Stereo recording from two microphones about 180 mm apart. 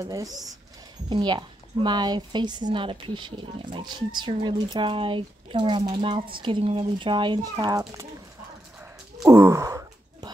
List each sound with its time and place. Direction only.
0.0 s speech: 20° right (ahead or behind)
9.2 s wail: 15° right (ahead or behind)